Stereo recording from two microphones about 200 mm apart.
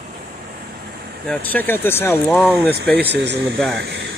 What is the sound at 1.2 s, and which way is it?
Speech, 10° left (ahead or behind).